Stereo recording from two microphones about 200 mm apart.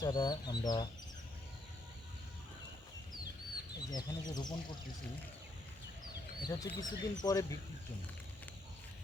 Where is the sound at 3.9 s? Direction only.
20° left (ahead or behind).